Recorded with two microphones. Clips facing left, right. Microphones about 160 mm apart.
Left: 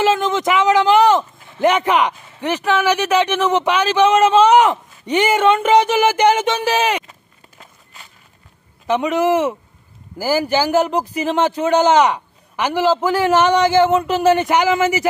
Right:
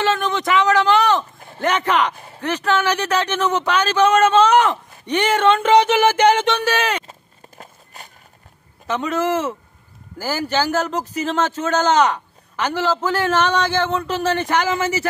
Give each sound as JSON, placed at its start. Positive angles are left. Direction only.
{"t": 0.2, "sound": "a sound", "side_deg": 15}
{"t": 1.6, "sound": "a man's voice", "side_deg": 15}
{"t": 7.1, "sound": "walk", "side_deg": -40}
{"t": 8.8, "sound": "a man's voice", "side_deg": 15}